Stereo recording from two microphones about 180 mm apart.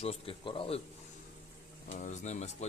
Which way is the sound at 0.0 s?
30° left (ahead or behind).